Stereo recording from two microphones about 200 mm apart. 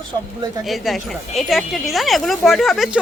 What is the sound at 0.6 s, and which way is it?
A woman's voice, centre (ahead or behind).